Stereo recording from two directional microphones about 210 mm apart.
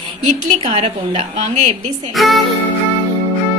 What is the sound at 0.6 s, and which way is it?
Speech, 25° right (ahead or behind).